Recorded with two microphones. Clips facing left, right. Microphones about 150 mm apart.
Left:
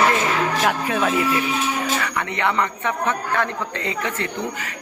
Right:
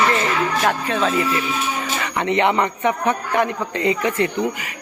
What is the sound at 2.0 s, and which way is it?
A man's voice, 20° right (ahead or behind).